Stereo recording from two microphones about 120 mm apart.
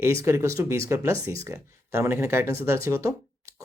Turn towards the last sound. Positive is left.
turn(degrees=-25)  # may be behind; listen again after turning